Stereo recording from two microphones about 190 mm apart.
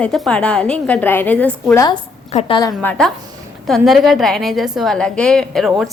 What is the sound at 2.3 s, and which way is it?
Speech, 35° left (ahead or behind).